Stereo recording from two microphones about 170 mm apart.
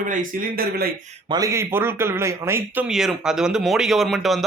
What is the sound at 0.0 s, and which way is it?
Speech, 50° right (ahead or behind).